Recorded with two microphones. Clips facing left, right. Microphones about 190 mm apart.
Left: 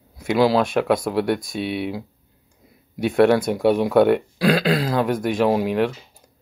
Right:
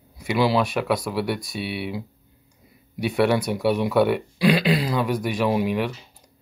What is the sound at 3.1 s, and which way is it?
Speech, 50° left (ahead or behind).